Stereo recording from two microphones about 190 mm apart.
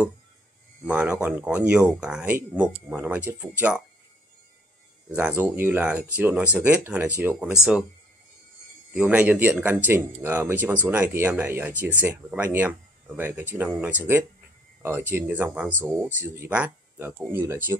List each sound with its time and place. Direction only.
0.8 s speech: 5° right (ahead or behind)
5.1 s speech: 10° right (ahead or behind)
8.9 s speech: 5° right (ahead or behind)